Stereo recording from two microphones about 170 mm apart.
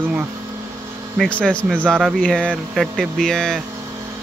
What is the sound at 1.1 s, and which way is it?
Speech, 5° left (ahead or behind).